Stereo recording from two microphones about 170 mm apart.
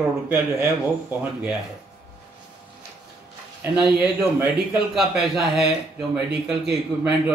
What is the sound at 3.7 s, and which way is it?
A man's voice, 5° right (ahead or behind).